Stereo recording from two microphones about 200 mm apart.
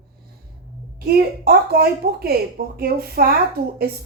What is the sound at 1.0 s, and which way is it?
A woman's voice, 50° right (ahead or behind).